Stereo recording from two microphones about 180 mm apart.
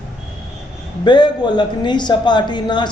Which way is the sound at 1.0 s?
25° left (ahead or behind).